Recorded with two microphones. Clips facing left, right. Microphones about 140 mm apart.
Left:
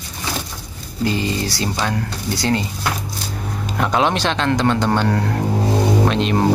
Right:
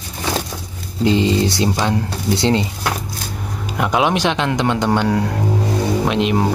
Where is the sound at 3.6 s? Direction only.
10° right (ahead or behind).